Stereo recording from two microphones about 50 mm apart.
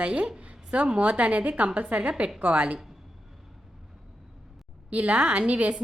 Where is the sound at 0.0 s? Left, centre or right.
Right.